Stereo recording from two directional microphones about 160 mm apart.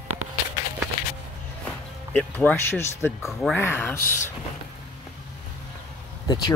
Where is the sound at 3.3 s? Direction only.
Centre (ahead or behind).